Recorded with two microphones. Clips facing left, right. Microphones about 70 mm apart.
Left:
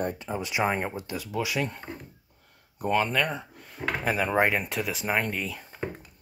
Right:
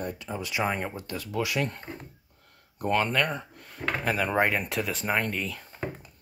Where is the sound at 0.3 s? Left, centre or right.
Left.